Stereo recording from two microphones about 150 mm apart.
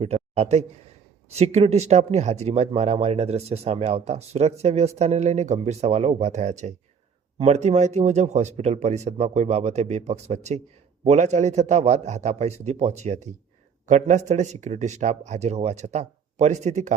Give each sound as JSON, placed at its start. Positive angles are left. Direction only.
{"t": 0.0, "sound": "a man's voice", "side_deg": -45}